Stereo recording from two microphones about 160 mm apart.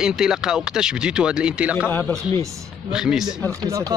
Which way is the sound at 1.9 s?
10° left (ahead or behind).